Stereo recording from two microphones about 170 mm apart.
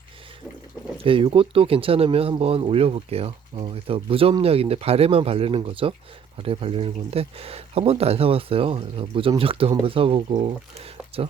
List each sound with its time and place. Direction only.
1.0 s speech: 30° right (ahead or behind)